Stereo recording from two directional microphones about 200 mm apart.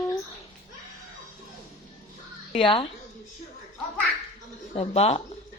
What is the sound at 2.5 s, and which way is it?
Speech, 25° left (ahead or behind).